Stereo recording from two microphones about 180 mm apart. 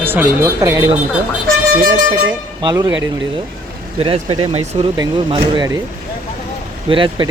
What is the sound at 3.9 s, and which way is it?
Speech, 30° right (ahead or behind).